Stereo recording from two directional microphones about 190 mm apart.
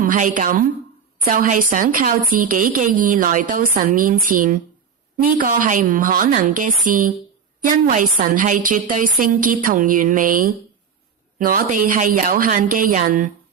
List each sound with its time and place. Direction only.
0.0 s a woman's voice: 45° right (ahead or behind)